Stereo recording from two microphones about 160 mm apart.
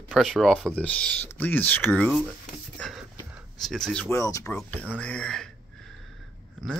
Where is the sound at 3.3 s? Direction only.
5° right (ahead or behind).